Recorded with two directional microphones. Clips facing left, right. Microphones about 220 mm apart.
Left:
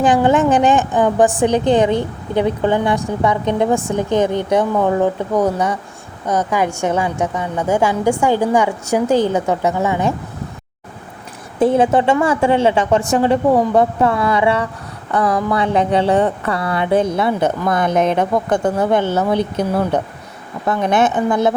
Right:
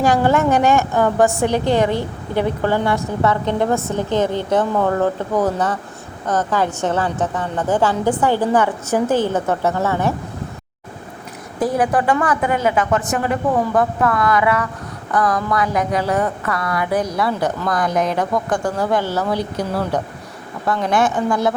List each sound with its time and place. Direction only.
0.0 s a woman's voice: 20° left (ahead or behind)
11.6 s speech: 25° left (ahead or behind)